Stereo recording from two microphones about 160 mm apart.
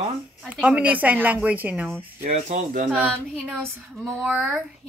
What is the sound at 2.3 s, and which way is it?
Speech, 50° right (ahead or behind).